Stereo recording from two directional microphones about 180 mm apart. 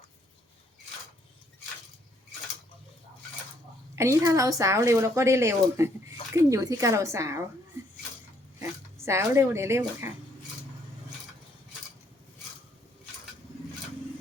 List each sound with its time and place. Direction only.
3.9 s a woman's voice: 15° right (ahead or behind)
9.0 s a woman's voice: 15° right (ahead or behind)